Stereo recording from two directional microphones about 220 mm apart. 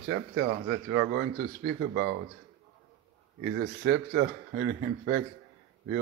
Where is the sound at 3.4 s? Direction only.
55° right (ahead or behind).